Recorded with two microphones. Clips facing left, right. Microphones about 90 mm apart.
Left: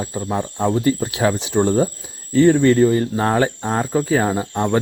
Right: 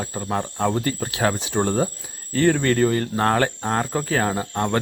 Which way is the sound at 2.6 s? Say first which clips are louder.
Left 6 dB; 55° right (ahead or behind).